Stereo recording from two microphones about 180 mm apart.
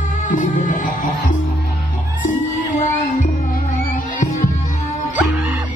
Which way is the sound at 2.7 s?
45° left (ahead or behind).